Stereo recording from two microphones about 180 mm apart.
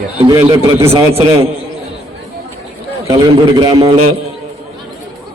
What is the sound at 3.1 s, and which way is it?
Speech, 20° right (ahead or behind).